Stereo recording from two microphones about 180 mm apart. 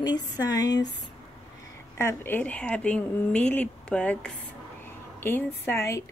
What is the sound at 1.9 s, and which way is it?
A woman's voice, 15° left (ahead or behind).